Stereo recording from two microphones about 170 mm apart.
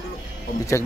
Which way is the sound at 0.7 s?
15° left (ahead or behind).